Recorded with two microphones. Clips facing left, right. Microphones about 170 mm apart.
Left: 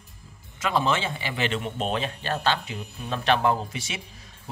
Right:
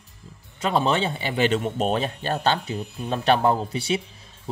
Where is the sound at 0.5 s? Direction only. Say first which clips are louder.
Right 3 dB; 30° right (ahead or behind).